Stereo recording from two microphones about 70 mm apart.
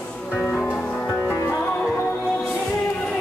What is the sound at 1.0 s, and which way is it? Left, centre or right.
Music, left.